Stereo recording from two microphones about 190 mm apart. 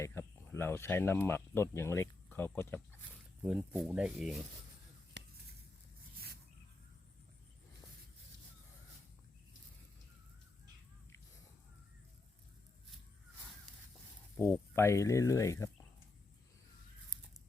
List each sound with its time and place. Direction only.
0.0 s speech: 15° left (ahead or behind)
3.4 s speech: 5° right (ahead or behind)
6.1 s a sound: 55° right (ahead or behind)
14.3 s speech: 10° left (ahead or behind)